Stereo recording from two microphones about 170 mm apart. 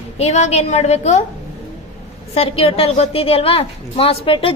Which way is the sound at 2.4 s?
35° left (ahead or behind).